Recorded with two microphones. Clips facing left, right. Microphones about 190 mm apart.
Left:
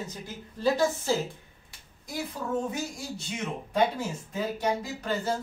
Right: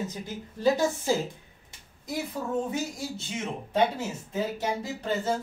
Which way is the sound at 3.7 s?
25° right (ahead or behind).